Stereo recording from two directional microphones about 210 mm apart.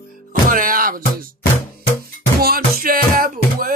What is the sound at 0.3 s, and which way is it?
Music, 40° right (ahead or behind).